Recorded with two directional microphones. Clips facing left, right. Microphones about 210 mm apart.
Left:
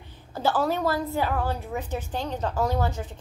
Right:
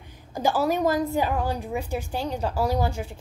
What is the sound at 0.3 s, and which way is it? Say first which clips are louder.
A woman's voice: right 1 dB; 15° right (ahead or behind).